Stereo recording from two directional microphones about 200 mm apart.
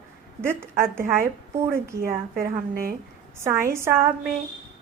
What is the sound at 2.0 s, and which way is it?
Speech, 45° right (ahead or behind).